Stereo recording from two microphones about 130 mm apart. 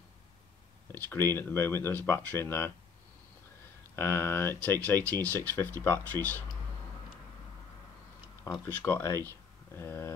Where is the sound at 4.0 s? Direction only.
15° left (ahead or behind).